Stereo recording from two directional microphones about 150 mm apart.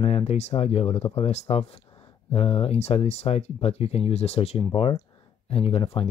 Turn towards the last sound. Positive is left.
turn(degrees=40)  # may be behind; listen again after turning